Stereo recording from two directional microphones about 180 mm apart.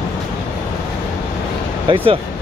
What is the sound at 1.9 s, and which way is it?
Speech, 30° right (ahead or behind).